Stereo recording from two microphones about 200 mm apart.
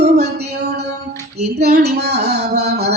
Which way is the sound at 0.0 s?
35° right (ahead or behind).